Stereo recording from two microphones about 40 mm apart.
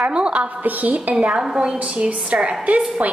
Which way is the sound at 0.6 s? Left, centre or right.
Right.